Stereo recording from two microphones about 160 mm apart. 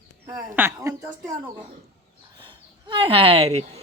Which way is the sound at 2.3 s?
30° right (ahead or behind).